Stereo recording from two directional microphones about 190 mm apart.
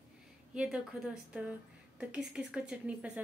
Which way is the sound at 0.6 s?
5° right (ahead or behind).